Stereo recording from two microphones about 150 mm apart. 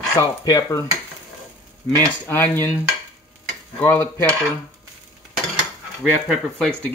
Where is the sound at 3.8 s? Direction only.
15° left (ahead or behind).